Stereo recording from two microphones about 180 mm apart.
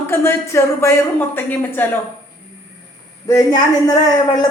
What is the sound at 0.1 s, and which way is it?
A woman's voice, 15° left (ahead or behind).